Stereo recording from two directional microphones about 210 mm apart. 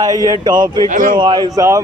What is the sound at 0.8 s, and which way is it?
Speech, 35° right (ahead or behind).